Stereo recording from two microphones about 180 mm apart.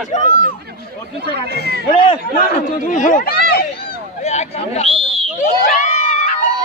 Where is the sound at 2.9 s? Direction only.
45° left (ahead or behind).